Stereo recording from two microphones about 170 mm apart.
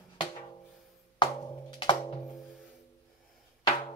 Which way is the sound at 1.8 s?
30° left (ahead or behind).